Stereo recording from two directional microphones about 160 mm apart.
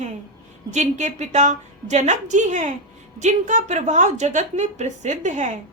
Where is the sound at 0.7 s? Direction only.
45° right (ahead or behind).